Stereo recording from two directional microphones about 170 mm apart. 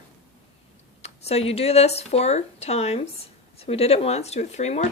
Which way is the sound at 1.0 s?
40° left (ahead or behind).